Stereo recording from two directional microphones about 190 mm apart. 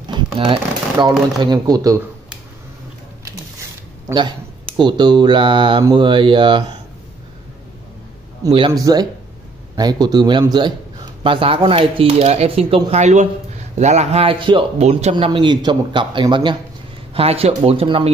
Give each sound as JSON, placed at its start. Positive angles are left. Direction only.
{"t": 0.1, "sound": "speech", "side_deg": -25}
{"t": 4.7, "sound": "speech", "side_deg": -25}
{"t": 8.5, "sound": "speech", "side_deg": -30}
{"t": 8.7, "sound": "speech", "side_deg": -20}